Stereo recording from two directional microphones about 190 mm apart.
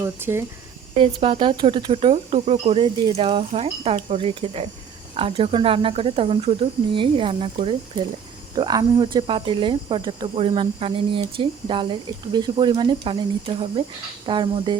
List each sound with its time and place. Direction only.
0.0 s speech: 15° right (ahead or behind)
0.9 s cricket: 30° right (ahead or behind)